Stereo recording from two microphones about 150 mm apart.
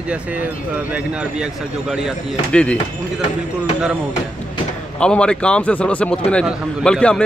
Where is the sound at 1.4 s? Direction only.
5° right (ahead or behind).